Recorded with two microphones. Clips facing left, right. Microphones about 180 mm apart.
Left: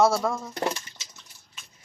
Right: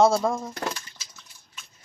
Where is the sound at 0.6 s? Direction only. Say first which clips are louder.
Left 3 dB; 25° left (ahead or behind).